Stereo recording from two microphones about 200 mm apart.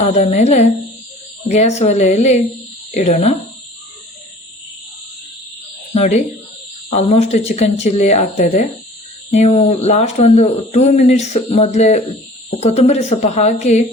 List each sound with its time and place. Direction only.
0.0 s speech: 35° left (ahead or behind)
5.9 s speech: 35° left (ahead or behind)